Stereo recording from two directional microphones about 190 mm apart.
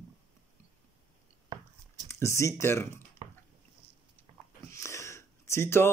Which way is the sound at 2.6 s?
15° left (ahead or behind).